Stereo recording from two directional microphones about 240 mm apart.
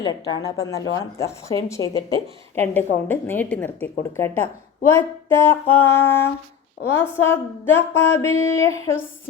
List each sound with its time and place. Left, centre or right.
0.0 s a woman's voice: centre
4.9 s a woman's voice: centre